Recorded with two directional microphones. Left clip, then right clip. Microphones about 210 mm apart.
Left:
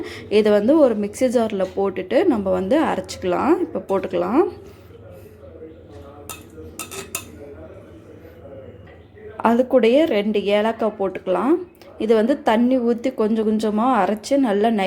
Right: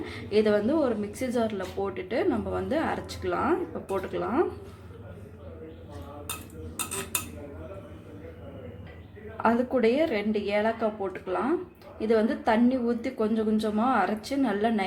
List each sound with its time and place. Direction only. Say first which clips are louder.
0.0 s speech: left 7 dB; 40° left (ahead or behind)
9.4 s speech: left 8 dB; 35° left (ahead or behind)